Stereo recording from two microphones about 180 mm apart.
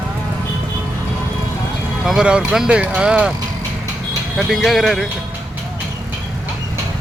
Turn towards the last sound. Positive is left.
turn(degrees=0)  # may be behind; listen again after turning